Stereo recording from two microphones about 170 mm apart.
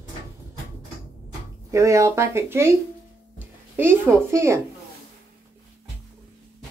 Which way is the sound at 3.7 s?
15° right (ahead or behind).